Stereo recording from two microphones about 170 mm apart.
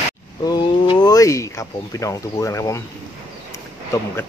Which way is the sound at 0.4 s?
25° left (ahead or behind).